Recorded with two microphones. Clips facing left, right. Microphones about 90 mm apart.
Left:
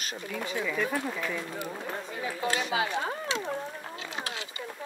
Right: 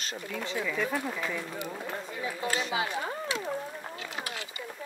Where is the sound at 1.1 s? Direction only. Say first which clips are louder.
Left 1 dB; 5° right (ahead or behind).